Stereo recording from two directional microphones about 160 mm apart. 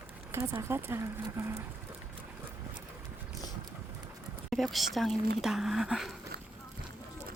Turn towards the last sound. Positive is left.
turn(degrees=0)  # may be behind; listen again after turning